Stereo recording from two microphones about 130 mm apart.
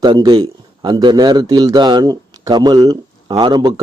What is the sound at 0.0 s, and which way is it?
A man's voice, 35° right (ahead or behind).